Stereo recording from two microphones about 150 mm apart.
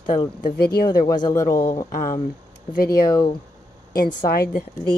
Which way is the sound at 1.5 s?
70° left (ahead or behind).